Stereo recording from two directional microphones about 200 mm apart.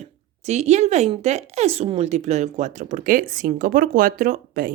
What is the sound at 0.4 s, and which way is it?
A woman's voice, 35° right (ahead or behind).